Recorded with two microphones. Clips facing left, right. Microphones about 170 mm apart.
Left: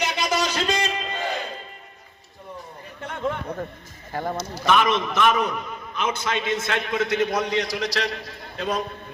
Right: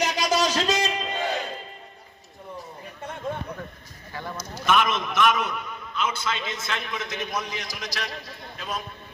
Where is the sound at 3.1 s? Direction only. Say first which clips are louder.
Left 4 dB; 90° left.